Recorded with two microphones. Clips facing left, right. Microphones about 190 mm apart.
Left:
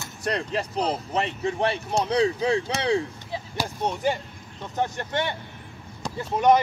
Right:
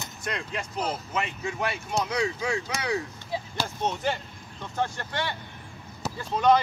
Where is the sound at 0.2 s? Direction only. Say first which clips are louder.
Left 7 dB; 35° left (ahead or behind).